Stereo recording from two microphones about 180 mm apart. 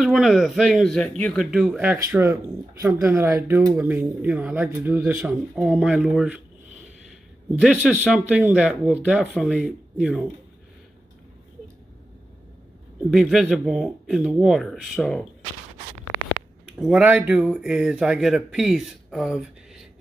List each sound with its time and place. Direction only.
0.0 s speech: centre (ahead or behind)
7.6 s speech: 5° right (ahead or behind)
13.1 s speech: centre (ahead or behind)
16.8 s speech: 5° right (ahead or behind)